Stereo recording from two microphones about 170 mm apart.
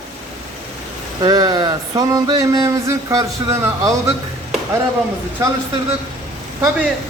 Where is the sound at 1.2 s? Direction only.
25° right (ahead or behind).